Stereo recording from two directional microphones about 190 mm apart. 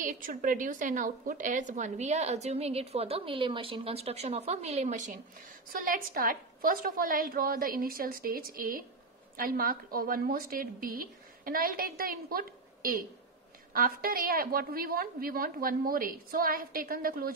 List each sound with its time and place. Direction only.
0.0 s a woman's voice: 45° right (ahead or behind)